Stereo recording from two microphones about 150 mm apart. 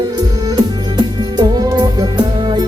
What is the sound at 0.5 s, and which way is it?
Music, 30° right (ahead or behind).